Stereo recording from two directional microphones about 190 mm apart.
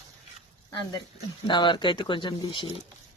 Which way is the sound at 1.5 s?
25° left (ahead or behind).